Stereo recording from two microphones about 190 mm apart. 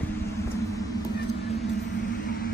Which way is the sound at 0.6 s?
15° left (ahead or behind).